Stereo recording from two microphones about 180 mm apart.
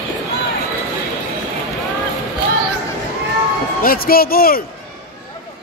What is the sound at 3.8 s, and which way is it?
Speech, 55° left (ahead or behind).